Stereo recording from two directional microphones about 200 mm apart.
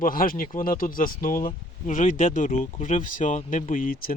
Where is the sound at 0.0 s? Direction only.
45° left (ahead or behind).